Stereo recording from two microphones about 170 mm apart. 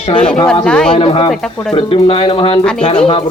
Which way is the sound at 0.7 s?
5° left (ahead or behind).